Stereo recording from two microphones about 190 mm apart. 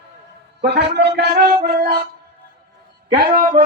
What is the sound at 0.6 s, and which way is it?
Speech, 60° right (ahead or behind).